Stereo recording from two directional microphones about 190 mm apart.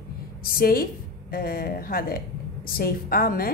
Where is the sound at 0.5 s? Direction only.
50° left (ahead or behind).